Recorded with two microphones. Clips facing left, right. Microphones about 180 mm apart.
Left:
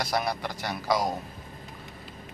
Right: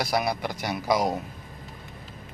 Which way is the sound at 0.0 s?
10° right (ahead or behind).